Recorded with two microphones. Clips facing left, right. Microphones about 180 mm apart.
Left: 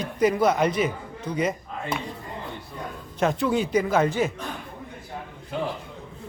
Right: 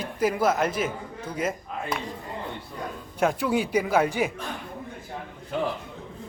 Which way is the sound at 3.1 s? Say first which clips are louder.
Left 1 dB; 10° right (ahead or behind).